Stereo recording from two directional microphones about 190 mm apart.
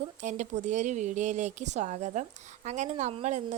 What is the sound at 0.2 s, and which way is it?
Speech, 40° right (ahead or behind).